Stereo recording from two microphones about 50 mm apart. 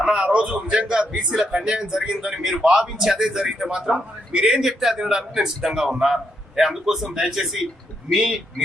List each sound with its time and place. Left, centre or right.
0.0 s a man's voice: centre